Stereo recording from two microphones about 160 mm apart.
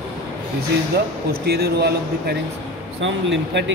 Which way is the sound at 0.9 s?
75° right (ahead or behind).